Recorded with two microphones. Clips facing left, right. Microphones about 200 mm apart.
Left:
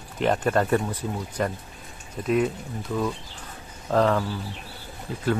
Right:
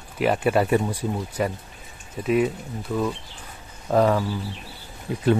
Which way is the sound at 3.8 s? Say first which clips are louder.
Right 2 dB; 10° right (ahead or behind).